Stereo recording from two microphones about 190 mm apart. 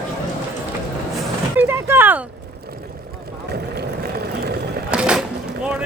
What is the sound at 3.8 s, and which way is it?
Vehicle, 60° right (ahead or behind).